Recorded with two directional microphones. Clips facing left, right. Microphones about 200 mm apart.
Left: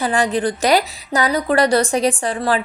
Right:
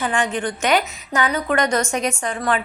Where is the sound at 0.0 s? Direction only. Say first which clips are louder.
Left 4 dB; 35° left (ahead or behind).